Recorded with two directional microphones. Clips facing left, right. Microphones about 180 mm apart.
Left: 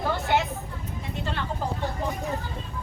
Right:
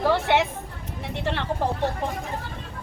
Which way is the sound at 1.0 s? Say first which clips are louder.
Right 5 dB; 75° right (ahead or behind).